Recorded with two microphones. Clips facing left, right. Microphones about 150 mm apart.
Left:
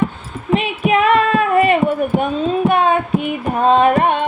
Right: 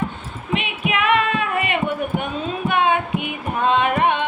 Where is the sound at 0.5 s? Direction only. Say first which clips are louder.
Left 8 dB; 40° left (ahead or behind).